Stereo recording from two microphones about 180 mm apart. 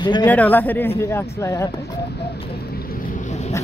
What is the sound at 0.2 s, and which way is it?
Speech, 10° left (ahead or behind).